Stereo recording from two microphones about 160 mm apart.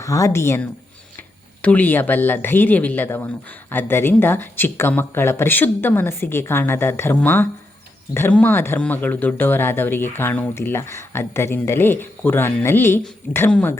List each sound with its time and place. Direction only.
0.0 s speech: 20° left (ahead or behind)